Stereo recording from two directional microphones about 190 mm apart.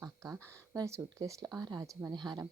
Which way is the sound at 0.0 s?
15° right (ahead or behind).